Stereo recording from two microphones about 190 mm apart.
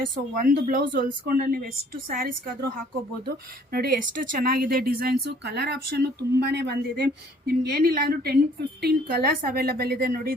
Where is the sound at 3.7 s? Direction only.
50° right (ahead or behind).